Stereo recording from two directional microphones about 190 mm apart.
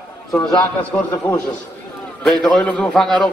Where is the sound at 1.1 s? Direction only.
15° left (ahead or behind).